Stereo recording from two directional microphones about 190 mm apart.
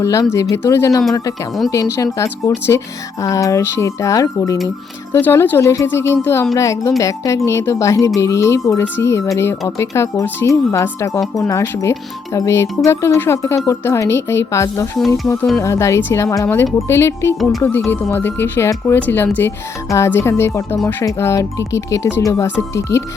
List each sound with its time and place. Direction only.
0.0 s speech: 15° left (ahead or behind)